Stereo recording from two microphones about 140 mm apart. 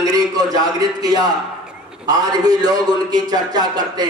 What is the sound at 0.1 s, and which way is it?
A man's voice, 25° right (ahead or behind).